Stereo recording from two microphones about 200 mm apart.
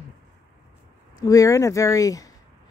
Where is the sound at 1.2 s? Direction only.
15° left (ahead or behind).